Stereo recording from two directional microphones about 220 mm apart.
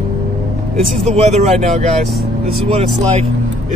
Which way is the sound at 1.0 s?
30° right (ahead or behind).